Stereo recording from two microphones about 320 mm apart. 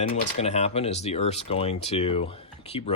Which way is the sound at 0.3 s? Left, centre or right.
Centre.